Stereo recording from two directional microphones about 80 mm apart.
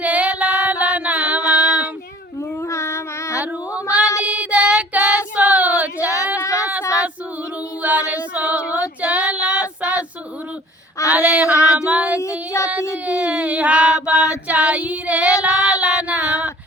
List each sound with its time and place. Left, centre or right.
0.0 s female singing: centre
2.6 s a sound: left
4.2 s child singing: centre
6.4 s a sound: left
7.8 s female singing: centre
11.1 s female singing: centre
11.5 s female singing: left
11.8 s child singing: centre
12.2 s child singing: left
13.1 s child singing: centre